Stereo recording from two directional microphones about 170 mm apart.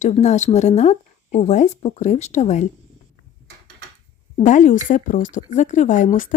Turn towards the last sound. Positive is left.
turn(degrees=50)  # may be behind; listen again after turning